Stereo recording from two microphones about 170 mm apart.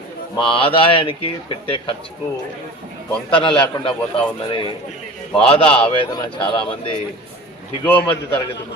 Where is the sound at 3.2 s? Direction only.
30° left (ahead or behind).